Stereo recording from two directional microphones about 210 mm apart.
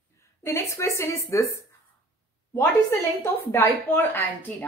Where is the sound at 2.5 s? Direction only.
10° left (ahead or behind).